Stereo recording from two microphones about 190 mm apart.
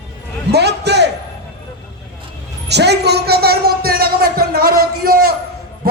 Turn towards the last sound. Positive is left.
turn(degrees=-50)  # may be behind; listen again after turning